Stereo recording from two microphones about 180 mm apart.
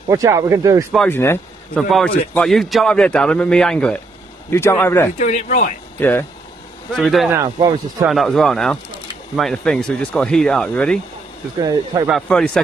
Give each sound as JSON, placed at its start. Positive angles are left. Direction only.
{"t": 0.1, "sound": "speech", "side_deg": -20}
{"t": 0.9, "sound": "a man's voice", "side_deg": 10}
{"t": 1.8, "sound": "a man's voice", "side_deg": 0}
{"t": 5.1, "sound": "speech", "side_deg": 40}
{"t": 5.9, "sound": "speech", "side_deg": 10}
{"t": 7.0, "sound": "a man's voice", "side_deg": 0}
{"t": 7.4, "sound": "speech", "side_deg": -25}
{"t": 8.1, "sound": "a man's voice", "side_deg": 0}
{"t": 11.6, "sound": "speech", "side_deg": -20}
{"t": 12.1, "sound": "a man's voice", "side_deg": 5}